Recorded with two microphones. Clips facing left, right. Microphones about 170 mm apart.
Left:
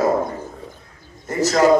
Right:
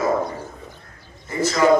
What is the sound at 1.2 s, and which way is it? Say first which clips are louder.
Speech: left 4 dB; 45° left (ahead or behind).